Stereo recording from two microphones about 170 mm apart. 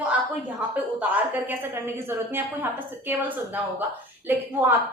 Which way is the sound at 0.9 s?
10° right (ahead or behind).